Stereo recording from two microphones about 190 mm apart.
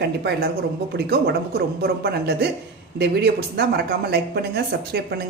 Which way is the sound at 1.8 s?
55° right (ahead or behind).